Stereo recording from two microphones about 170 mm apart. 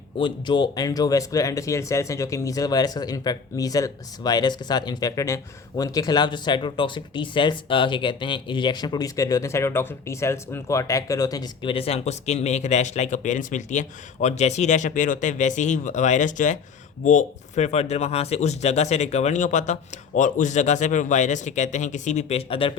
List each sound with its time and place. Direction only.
0.2 s speech: 30° left (ahead or behind)